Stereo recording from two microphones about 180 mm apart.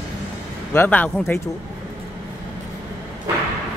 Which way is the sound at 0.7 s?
10° left (ahead or behind).